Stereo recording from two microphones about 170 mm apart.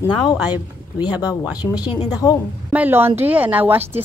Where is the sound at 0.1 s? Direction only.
25° left (ahead or behind).